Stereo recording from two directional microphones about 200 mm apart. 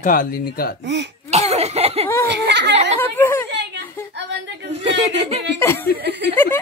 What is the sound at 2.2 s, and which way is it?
Child singing, 60° right (ahead or behind).